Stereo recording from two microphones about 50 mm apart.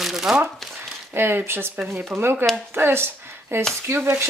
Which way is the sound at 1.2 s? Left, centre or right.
Right.